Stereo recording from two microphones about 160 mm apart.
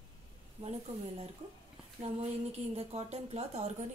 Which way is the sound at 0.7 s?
40° right (ahead or behind).